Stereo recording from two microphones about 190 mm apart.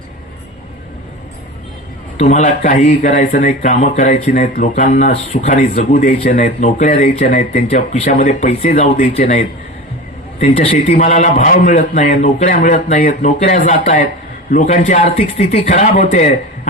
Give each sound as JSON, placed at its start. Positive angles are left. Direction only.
{"t": 2.1, "sound": "speech", "side_deg": 40}